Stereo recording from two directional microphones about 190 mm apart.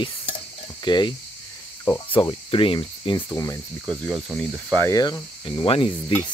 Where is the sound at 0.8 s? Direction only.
25° left (ahead or behind).